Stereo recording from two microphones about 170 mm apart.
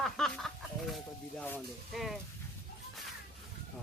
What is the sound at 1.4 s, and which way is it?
Speech, 10° left (ahead or behind).